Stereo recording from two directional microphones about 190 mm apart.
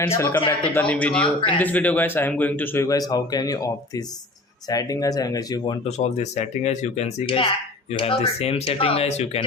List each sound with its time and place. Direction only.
0.0 s a man's voice: 15° left (ahead or behind)
6.0 s speech: 35° left (ahead or behind)